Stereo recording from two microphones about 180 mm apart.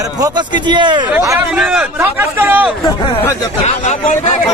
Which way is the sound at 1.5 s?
10° right (ahead or behind).